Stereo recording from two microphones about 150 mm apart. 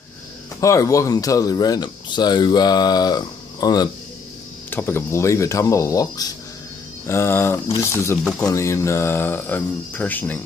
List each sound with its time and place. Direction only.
0.6 s speech: 20° left (ahead or behind)
4.6 s speech: 15° left (ahead or behind)